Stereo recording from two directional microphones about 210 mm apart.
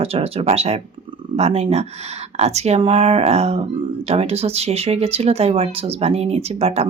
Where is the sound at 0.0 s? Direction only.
30° right (ahead or behind).